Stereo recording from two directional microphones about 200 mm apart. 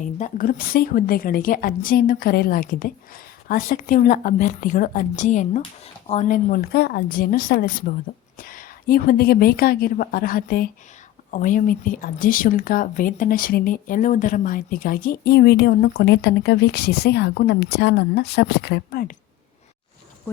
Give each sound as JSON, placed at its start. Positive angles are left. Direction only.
{"t": 0.2, "sound": "a woman's voice", "side_deg": 40}